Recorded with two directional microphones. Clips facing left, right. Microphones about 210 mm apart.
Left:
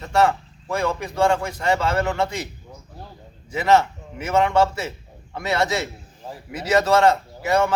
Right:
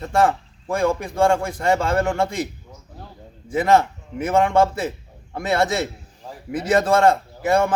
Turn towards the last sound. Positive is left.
turn(degrees=-50)  # may be behind; listen again after turning